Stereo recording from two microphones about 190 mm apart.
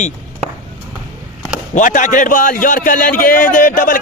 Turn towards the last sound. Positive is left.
turn(degrees=45)  # may be behind; listen again after turning